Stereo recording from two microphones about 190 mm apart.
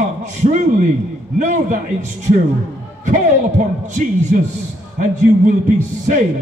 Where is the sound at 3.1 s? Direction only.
40° right (ahead or behind).